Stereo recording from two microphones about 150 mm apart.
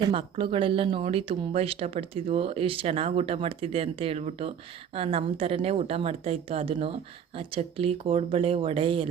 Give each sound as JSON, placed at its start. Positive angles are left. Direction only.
{"t": 0.1, "sound": "speech", "side_deg": -35}